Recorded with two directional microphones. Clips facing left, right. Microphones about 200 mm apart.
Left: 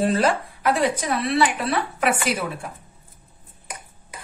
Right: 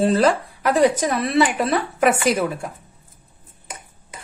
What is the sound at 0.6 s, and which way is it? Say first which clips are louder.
Speech: right 5 dB; 40° right (ahead or behind).